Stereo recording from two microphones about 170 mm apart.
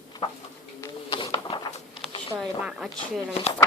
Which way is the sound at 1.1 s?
30° left (ahead or behind).